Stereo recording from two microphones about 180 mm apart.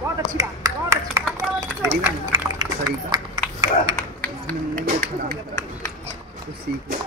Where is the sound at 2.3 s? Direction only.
20° right (ahead or behind).